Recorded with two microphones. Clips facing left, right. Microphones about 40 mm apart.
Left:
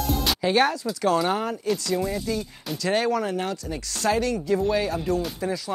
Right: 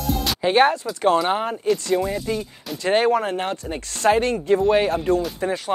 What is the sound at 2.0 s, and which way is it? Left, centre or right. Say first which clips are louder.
Speech: right 3 dB; right.